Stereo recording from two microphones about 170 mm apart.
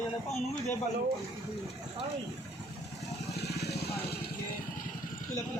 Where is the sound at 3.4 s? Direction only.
75° left (ahead or behind).